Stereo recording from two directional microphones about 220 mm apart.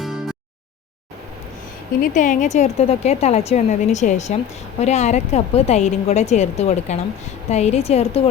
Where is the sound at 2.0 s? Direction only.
35° left (ahead or behind).